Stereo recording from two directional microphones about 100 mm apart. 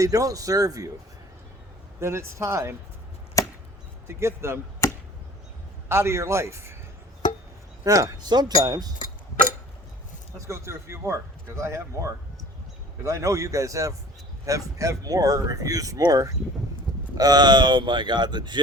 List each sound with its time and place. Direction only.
0.0 s speech: 35° right (ahead or behind)
2.0 s speech: 25° right (ahead or behind)
3.4 s chop: 35° left (ahead or behind)
4.0 s speech: 25° right (ahead or behind)
4.8 s chop: 30° left (ahead or behind)
5.9 s speech: 25° right (ahead or behind)
7.9 s speech: 35° right (ahead or behind)
10.3 s speech: 30° right (ahead or behind); by 18.6 s 50° right (ahead or behind)